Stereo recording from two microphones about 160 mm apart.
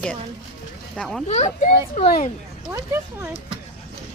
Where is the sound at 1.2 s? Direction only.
50° left (ahead or behind).